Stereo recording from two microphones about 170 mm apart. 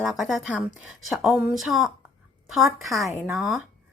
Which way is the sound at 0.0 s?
Centre (ahead or behind).